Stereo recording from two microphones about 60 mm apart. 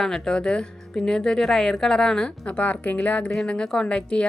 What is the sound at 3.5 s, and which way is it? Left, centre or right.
Speech, centre.